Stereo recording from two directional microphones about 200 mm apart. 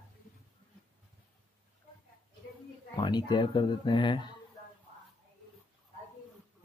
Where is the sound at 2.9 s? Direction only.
20° left (ahead or behind).